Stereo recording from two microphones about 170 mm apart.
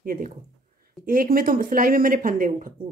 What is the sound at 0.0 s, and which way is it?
Speech, 55° right (ahead or behind).